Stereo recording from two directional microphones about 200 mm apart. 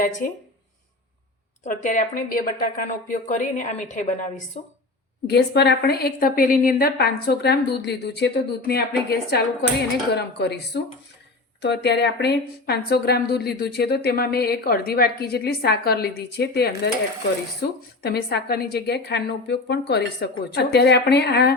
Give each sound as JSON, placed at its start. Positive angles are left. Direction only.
{"t": 0.0, "sound": "a woman's voice", "side_deg": 40}
{"t": 1.6, "sound": "a woman's voice", "side_deg": 40}
{"t": 5.2, "sound": "a woman's voice", "side_deg": 55}